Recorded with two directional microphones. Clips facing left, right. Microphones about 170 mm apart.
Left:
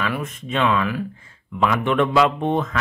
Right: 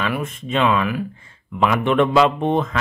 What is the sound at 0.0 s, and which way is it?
Speech, 25° right (ahead or behind).